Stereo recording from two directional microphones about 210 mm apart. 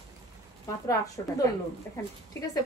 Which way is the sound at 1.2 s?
20° left (ahead or behind).